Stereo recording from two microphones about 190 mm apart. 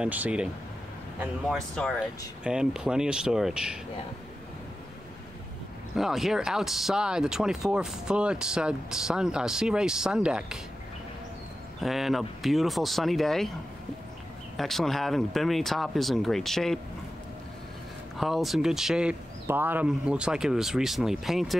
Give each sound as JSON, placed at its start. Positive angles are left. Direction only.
{"t": 0.0, "sound": "speech", "side_deg": -5}
{"t": 2.0, "sound": "speech", "side_deg": -5}
{"t": 5.9, "sound": "speech", "side_deg": 0}
{"t": 11.8, "sound": "speech", "side_deg": 0}
{"t": 14.6, "sound": "speech", "side_deg": 0}
{"t": 18.1, "sound": "speech", "side_deg": 0}